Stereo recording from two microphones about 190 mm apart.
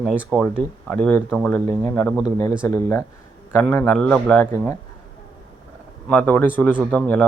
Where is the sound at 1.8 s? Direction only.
5° left (ahead or behind).